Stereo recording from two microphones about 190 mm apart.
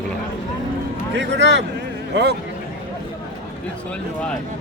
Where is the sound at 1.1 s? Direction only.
70° right (ahead or behind).